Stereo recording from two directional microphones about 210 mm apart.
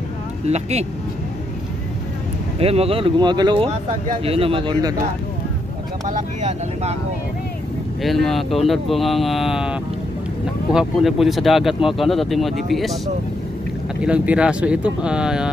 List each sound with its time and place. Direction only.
0.5 s speech: 30° right (ahead or behind)
2.6 s speech: 30° right (ahead or behind)
6.0 s speech: 35° right (ahead or behind)
8.0 s speech: centre (ahead or behind)